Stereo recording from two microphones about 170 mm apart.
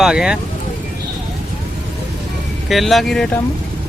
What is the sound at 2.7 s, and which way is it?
Speech, centre (ahead or behind).